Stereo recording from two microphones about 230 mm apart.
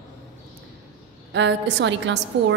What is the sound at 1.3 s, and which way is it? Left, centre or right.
Speech, right.